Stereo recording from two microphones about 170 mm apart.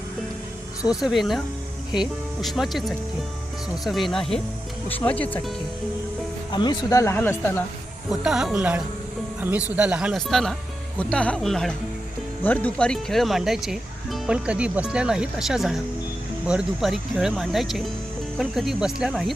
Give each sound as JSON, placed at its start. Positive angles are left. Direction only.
{"t": 0.9, "sound": "speech", "side_deg": 0}
{"t": 6.5, "sound": "speech", "side_deg": 25}
{"t": 8.1, "sound": "speech", "side_deg": -5}